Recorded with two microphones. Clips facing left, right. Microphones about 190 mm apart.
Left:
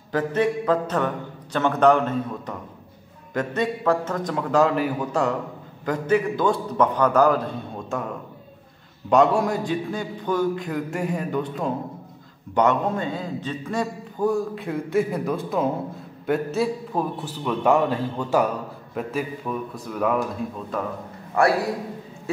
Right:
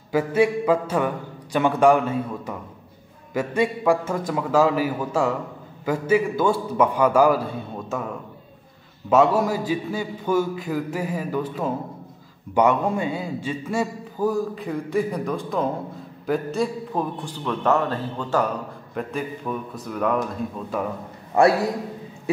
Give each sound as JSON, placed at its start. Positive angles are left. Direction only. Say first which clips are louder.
{"t": 0.1, "sound": "a man's voice", "louder": "right 2 dB", "side_deg": -10}
{"t": 9.1, "sound": "a man's voice", "louder": "even", "side_deg": -5}
{"t": 21.4, "sound": "a man's voice", "louder": "right 3 dB", "side_deg": -25}